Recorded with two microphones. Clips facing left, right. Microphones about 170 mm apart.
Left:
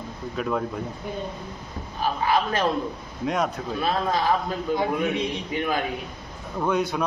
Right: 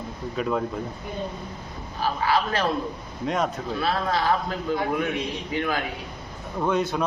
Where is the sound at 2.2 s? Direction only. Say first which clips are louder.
Even; 20° left (ahead or behind).